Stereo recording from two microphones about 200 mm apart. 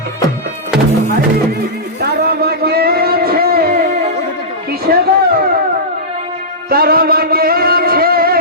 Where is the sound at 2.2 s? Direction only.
50° right (ahead or behind).